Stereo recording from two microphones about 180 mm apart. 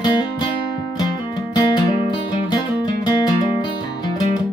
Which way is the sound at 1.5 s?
25° left (ahead or behind).